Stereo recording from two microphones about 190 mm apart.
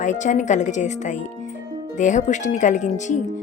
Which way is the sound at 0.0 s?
40° left (ahead or behind).